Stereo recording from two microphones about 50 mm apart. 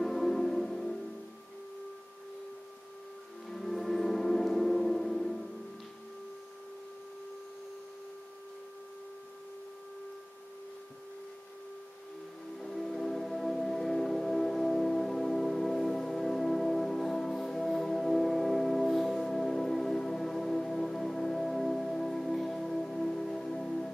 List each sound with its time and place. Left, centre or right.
0.0 s music: centre
3.4 s music: centre
12.5 s music: centre